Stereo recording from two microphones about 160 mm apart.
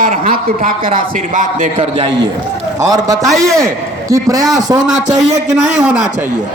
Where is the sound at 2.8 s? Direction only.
20° right (ahead or behind).